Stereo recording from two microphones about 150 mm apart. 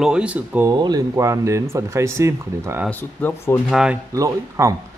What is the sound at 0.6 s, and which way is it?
Speech, 25° right (ahead or behind).